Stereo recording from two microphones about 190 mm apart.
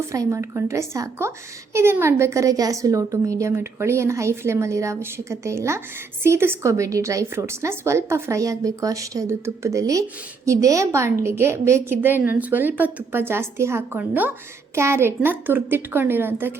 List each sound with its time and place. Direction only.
0.1 s a woman's voice: 15° right (ahead or behind)